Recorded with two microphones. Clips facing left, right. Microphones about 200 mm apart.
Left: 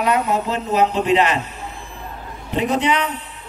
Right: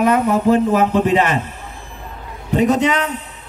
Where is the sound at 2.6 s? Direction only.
45° right (ahead or behind).